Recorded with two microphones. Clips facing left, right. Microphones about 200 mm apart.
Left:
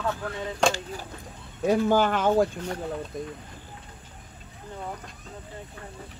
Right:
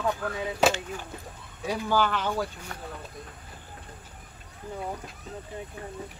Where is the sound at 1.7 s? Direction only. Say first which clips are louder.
Left 5 dB; 50° left (ahead or behind).